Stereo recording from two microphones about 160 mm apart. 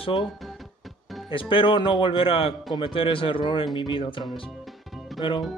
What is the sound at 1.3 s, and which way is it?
Speech, 30° left (ahead or behind).